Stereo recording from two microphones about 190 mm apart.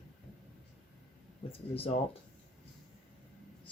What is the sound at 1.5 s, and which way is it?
Speech, 30° left (ahead or behind).